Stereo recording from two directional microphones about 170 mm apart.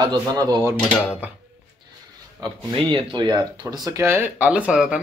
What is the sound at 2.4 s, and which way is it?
Speech, 25° right (ahead or behind).